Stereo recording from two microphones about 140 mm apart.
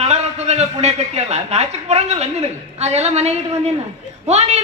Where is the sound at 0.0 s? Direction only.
50° right (ahead or behind).